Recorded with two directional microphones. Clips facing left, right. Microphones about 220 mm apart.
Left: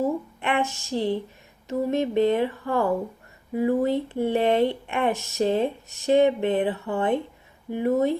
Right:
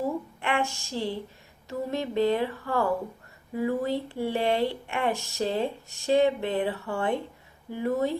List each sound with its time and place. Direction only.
0.4 s speech: 20° left (ahead or behind)